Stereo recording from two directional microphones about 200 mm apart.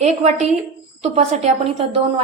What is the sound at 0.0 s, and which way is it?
A woman's voice, 35° right (ahead or behind).